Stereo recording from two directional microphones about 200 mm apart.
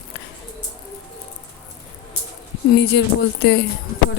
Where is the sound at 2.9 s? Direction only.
60° left (ahead or behind).